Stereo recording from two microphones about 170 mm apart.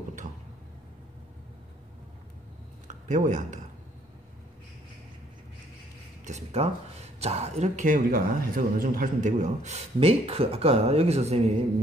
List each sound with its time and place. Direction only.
2.9 s speech: 45° right (ahead or behind)
6.2 s speech: 40° right (ahead or behind)